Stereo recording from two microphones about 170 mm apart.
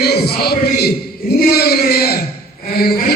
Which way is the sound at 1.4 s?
65° left (ahead or behind).